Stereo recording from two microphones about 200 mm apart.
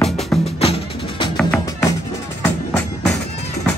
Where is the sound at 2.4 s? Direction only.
10° left (ahead or behind).